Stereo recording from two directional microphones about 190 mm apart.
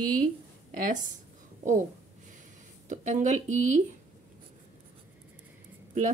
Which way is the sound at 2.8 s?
40° right (ahead or behind).